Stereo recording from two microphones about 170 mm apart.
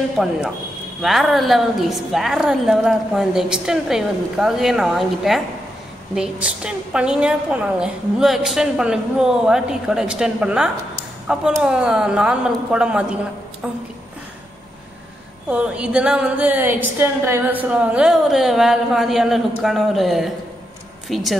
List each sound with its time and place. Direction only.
0.2 s a woman's voice: 5° right (ahead or behind)
15.5 s a woman's voice: 5° right (ahead or behind)